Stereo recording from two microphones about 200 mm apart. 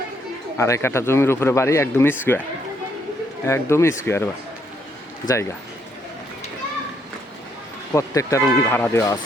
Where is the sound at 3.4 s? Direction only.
15° left (ahead or behind).